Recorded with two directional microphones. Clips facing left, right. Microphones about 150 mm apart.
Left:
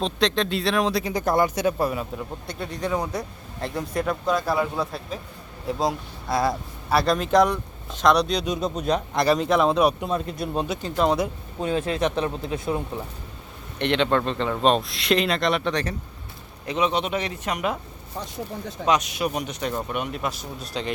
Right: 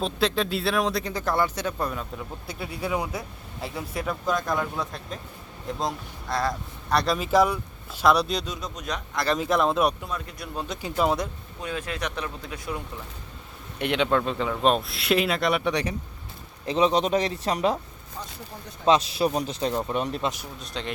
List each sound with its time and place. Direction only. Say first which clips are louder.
0.0 s speech: left 2 dB; 5° right (ahead or behind)
1.1 s speech: left 4 dB; 15° left (ahead or behind)
2.5 s speech: left 2 dB; 5° right (ahead or behind)
8.4 s speech: left 9 dB; 30° left (ahead or behind)
9.4 s speech: even; centre (ahead or behind)
10.0 s speech: left 8 dB; 25° left (ahead or behind)
10.8 s speech: left 1 dB; 5° right (ahead or behind)
11.6 s speech: left 8 dB; 30° left (ahead or behind)
13.7 s speech: left 2 dB; 5° right (ahead or behind)
16.6 s a man's voice: right 2 dB; 35° right (ahead or behind)
18.9 s speech: right 2 dB; 30° right (ahead or behind)
20.6 s speech: left 4 dB; centre (ahead or behind)